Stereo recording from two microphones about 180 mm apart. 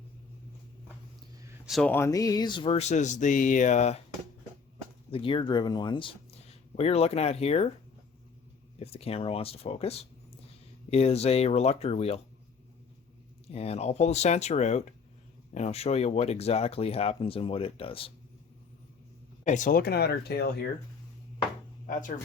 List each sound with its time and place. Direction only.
1.6 s speech: centre (ahead or behind)
1.9 s speech: 15° left (ahead or behind); by 4.0 s 40° left (ahead or behind)
5.1 s speech: 30° left (ahead or behind)
8.8 s speech: 35° left (ahead or behind)
13.5 s speech: 35° left (ahead or behind)
19.5 s speech: 45° left (ahead or behind); by 20.7 s 65° left (ahead or behind)